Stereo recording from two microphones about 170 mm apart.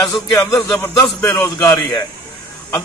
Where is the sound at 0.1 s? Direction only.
20° left (ahead or behind).